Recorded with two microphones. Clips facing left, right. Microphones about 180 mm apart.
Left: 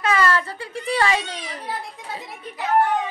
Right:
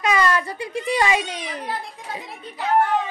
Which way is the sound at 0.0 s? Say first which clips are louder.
Even; 15° right (ahead or behind).